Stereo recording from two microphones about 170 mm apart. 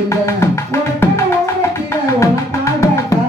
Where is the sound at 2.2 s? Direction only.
15° left (ahead or behind).